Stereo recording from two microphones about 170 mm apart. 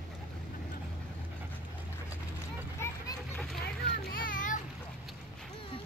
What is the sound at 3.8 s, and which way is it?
Children playing, 65° left (ahead or behind).